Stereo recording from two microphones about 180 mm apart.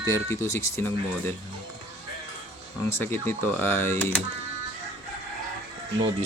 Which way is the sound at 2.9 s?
15° left (ahead or behind).